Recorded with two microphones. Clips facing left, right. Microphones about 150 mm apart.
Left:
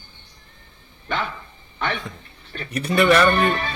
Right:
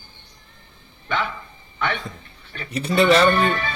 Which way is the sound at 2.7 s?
25° right (ahead or behind).